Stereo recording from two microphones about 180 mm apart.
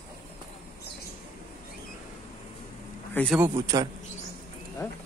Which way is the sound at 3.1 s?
5° left (ahead or behind).